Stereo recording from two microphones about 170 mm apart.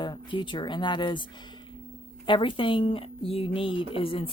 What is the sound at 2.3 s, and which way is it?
Speech, 30° left (ahead or behind).